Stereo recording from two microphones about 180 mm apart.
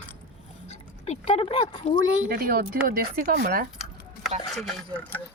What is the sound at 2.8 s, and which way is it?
Speech, 50° right (ahead or behind).